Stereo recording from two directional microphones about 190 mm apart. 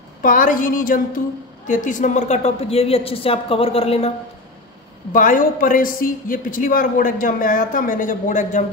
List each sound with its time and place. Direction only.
0.2 s a man's voice: 45° left (ahead or behind)
5.1 s a man's voice: 45° left (ahead or behind)